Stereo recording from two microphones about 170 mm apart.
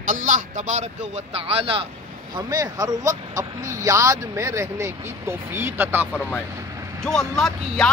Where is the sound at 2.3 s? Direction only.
20° right (ahead or behind).